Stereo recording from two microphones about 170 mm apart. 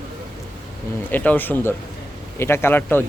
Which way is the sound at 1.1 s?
10° left (ahead or behind).